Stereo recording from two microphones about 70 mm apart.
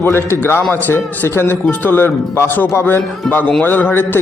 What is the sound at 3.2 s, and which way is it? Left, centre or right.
Speech, centre.